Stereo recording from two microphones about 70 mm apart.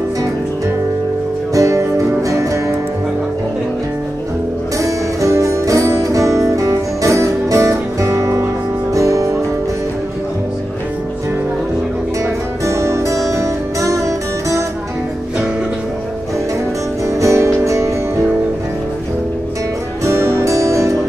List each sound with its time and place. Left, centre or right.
1.5 s music: right
4.7 s music: right
12.6 s music: right
17.2 s music: right
20.1 s music: right